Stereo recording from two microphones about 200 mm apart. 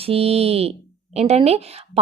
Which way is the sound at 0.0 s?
30° right (ahead or behind).